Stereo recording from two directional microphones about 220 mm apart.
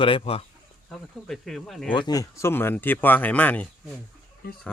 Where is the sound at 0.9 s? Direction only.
Centre (ahead or behind).